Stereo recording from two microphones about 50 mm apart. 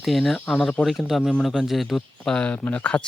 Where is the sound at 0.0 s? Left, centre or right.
Centre.